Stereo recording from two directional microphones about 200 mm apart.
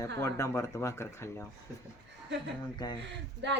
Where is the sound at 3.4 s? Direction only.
60° right (ahead or behind).